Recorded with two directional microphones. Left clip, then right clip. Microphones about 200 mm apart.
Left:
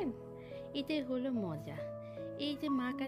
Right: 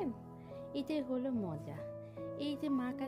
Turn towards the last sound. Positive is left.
turn(degrees=0)  # may be behind; listen again after turning